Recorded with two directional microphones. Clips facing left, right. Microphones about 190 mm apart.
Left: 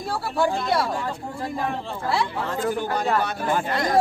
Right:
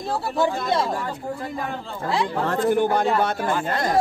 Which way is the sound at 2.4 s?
60° right (ahead or behind).